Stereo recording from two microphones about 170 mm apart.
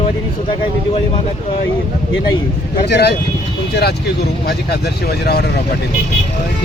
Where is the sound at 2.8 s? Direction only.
75° left (ahead or behind).